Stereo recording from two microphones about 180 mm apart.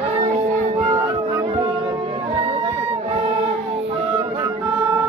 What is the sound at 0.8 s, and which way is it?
Music, 30° right (ahead or behind).